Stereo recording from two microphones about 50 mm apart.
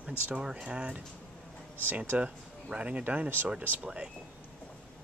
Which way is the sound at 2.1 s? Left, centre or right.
Right.